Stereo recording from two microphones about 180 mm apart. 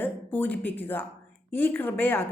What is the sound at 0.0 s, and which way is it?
A woman's voice, 10° left (ahead or behind).